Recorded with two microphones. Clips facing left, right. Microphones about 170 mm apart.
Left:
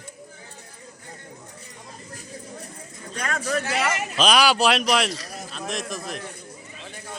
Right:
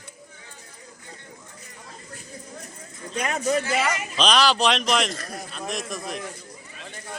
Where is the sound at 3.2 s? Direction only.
20° right (ahead or behind).